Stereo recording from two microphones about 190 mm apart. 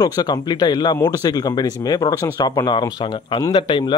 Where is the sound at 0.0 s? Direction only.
20° left (ahead or behind).